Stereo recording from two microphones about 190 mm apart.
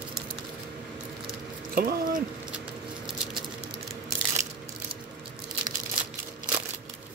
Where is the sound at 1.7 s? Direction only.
45° right (ahead or behind).